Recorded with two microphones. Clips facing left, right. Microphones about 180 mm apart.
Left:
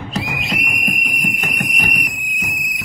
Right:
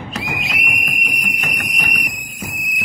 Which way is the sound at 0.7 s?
45° left (ahead or behind).